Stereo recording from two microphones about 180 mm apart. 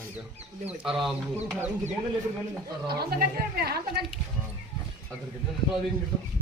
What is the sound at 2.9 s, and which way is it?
Speech, 60° right (ahead or behind).